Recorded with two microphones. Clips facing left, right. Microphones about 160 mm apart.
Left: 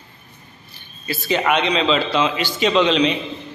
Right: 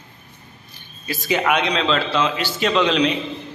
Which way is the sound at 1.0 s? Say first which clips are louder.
Left 1 dB; 5° right (ahead or behind).